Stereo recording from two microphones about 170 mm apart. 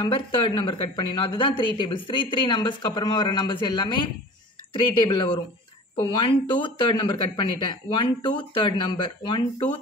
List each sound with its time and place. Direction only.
0.1 s speech: 30° left (ahead or behind)
5.0 s speech: 30° left (ahead or behind)